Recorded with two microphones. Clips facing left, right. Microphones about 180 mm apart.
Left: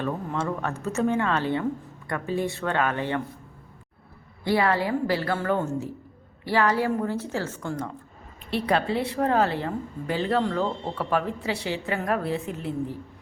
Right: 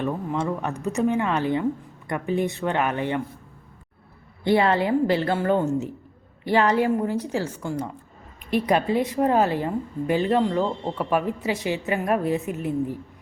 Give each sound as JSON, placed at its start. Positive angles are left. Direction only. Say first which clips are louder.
{"t": 0.0, "sound": "a woman's voice", "louder": "right 2 dB", "side_deg": -15}
{"t": 4.4, "sound": "a woman's voice", "louder": "right 3 dB", "side_deg": -20}